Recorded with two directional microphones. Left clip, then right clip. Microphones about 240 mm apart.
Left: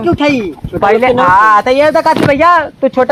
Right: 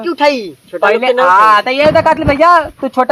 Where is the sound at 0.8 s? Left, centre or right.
Left.